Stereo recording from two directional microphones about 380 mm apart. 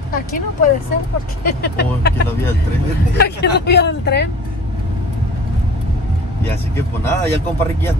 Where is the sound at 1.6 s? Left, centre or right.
Left.